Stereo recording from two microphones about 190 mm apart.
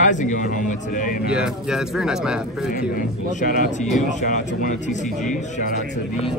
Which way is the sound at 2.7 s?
45° left (ahead or behind).